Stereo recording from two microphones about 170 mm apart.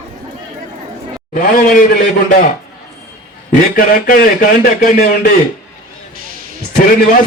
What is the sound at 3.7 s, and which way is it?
Speech, 55° left (ahead or behind).